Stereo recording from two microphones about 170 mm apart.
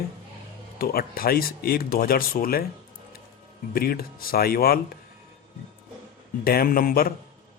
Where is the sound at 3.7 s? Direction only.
60° left (ahead or behind).